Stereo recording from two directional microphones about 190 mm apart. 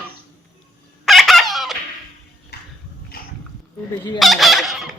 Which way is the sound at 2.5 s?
55° left (ahead or behind).